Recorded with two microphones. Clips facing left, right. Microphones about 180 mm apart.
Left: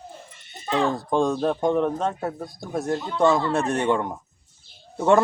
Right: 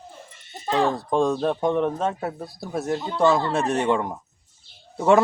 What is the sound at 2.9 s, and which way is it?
Speech, 20° right (ahead or behind).